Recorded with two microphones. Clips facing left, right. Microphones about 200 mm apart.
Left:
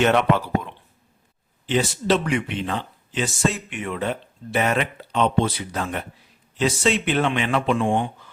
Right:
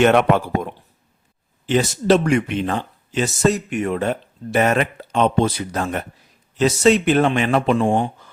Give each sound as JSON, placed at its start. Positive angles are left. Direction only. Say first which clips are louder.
{"t": 0.0, "sound": "speech", "louder": "right 4 dB", "side_deg": -55}